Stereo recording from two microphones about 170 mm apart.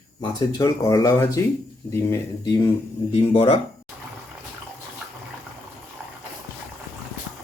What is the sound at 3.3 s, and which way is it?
Speech, 35° left (ahead or behind).